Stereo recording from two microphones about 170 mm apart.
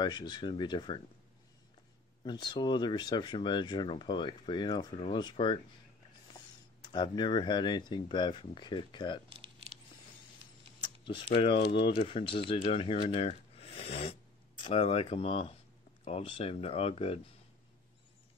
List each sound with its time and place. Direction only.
0.0 s speech: 25° left (ahead or behind)
2.2 s speech: 25° left (ahead or behind)
6.8 s speech: 25° left (ahead or behind)
10.8 s speech: 30° left (ahead or behind)